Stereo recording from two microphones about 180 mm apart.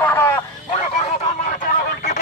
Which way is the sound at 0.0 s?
10° left (ahead or behind).